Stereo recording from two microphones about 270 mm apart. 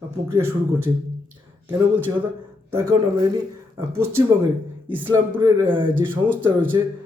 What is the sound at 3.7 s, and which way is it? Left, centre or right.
A man's voice, centre.